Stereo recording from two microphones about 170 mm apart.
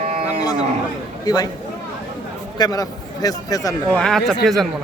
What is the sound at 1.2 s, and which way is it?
Speech, 20° left (ahead or behind).